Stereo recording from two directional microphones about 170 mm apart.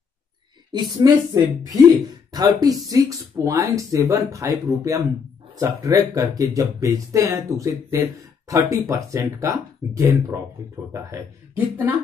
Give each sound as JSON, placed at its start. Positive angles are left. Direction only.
{"t": 0.7, "sound": "speech", "side_deg": -25}